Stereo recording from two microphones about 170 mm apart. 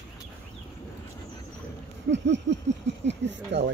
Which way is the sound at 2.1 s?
90° right.